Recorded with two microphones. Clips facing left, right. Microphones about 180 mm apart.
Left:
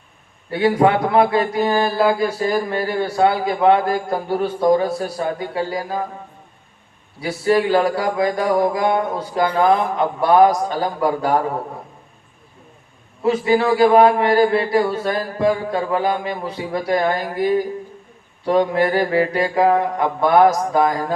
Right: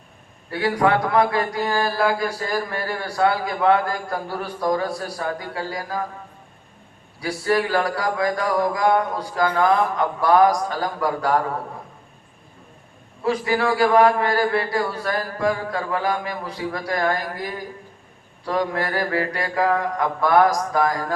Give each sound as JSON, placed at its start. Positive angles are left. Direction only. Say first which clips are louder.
{"t": 0.5, "sound": "speech", "louder": "left 4 dB", "side_deg": 25}
{"t": 7.2, "sound": "speech", "louder": "left 4 dB", "side_deg": 25}
{"t": 13.2, "sound": "speech", "louder": "left 5 dB", "side_deg": 20}